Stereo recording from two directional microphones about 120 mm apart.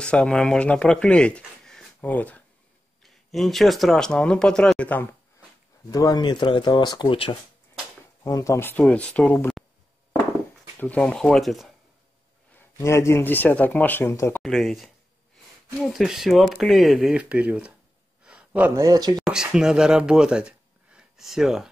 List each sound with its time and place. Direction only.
0.0 s speech: 10° left (ahead or behind)
3.0 s speech: centre (ahead or behind)
5.9 s speech: 30° left (ahead or behind)
6.2 s speech: 40° left (ahead or behind)
8.2 s speech: 25° left (ahead or behind)
10.8 s speech: 10° left (ahead or behind)
12.5 s speech: 25° left (ahead or behind)
14.4 s speech: centre (ahead or behind)
15.9 s speech: centre (ahead or behind)
18.2 s a sound: 10° right (ahead or behind)
18.8 s speech: 30° right (ahead or behind)
19.1 s speech: 5° right (ahead or behind)